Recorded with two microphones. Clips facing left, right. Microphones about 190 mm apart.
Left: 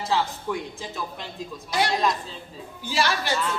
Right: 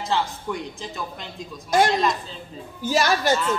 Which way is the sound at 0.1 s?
Centre (ahead or behind).